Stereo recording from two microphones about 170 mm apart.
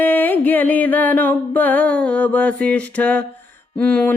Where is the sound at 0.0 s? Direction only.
10° left (ahead or behind).